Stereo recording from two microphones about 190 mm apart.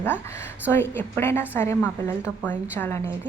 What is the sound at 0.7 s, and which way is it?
A woman's voice, 10° left (ahead or behind).